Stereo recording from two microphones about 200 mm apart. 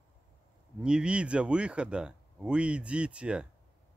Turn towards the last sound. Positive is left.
turn(degrees=-5)  # may be behind; listen again after turning